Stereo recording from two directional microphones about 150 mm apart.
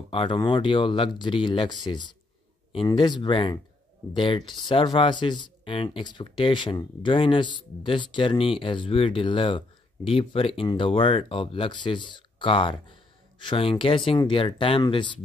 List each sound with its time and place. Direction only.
0.1 s speech: 35° left (ahead or behind)
2.7 s speech: 35° left (ahead or behind)